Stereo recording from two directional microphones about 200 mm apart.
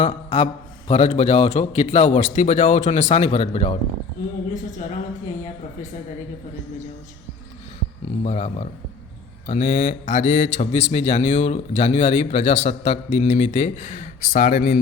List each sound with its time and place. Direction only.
0.0 s a man's voice: 35° left (ahead or behind)
8.2 s a man's voice: 30° left (ahead or behind)